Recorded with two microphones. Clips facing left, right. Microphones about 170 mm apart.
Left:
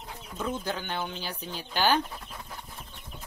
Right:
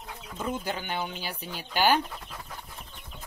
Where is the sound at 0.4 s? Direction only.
10° right (ahead or behind).